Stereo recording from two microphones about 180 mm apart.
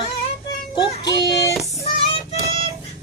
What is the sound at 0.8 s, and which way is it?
Child singing, 20° left (ahead or behind).